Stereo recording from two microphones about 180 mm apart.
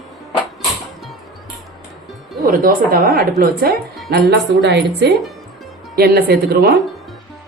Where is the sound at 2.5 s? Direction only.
55° right (ahead or behind).